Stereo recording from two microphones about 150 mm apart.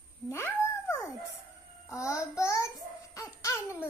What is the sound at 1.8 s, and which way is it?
Speech, 20° left (ahead or behind).